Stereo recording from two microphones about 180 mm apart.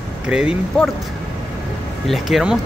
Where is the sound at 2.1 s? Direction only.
Centre (ahead or behind).